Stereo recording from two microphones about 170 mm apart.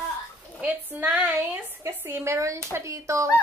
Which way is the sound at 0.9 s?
10° right (ahead or behind).